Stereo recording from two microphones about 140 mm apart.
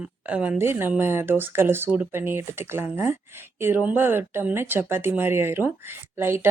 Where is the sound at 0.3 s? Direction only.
10° right (ahead or behind).